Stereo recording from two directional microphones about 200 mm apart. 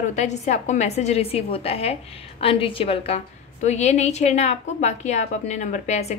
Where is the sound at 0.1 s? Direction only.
35° left (ahead or behind).